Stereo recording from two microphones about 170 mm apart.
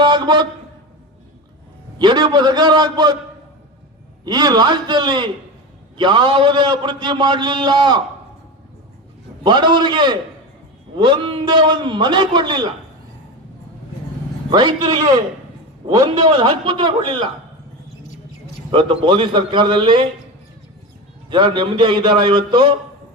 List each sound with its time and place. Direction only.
0.0 s speech: 25° right (ahead or behind)
2.0 s a man's voice: 25° right (ahead or behind)
4.3 s a man's voice: 25° right (ahead or behind)
9.4 s a man's voice: 25° right (ahead or behind)
14.5 s a man's voice: 25° right (ahead or behind)
18.7 s a man's voice: 30° right (ahead or behind)
21.2 s a man's voice: 30° right (ahead or behind)